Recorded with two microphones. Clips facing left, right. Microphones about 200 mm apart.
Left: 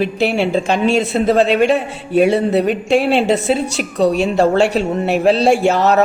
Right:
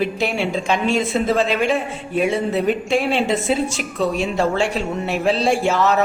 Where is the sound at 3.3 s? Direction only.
70° left (ahead or behind).